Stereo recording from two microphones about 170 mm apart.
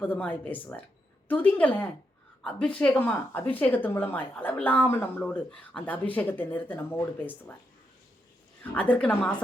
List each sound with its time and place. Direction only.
0.0 s speech: 10° left (ahead or behind)
8.7 s speech: 10° left (ahead or behind)